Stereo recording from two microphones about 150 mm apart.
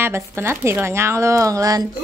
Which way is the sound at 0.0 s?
15° right (ahead or behind).